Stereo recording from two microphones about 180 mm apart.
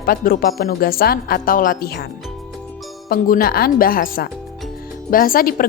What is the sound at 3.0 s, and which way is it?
A woman's voice, 55° left (ahead or behind).